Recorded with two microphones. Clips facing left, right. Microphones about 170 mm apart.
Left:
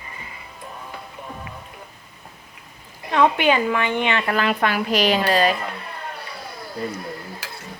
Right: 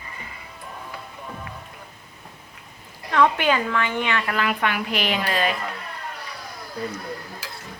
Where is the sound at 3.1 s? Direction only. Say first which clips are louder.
Left 2 dB; 20° left (ahead or behind); by 5.5 s 35° left (ahead or behind).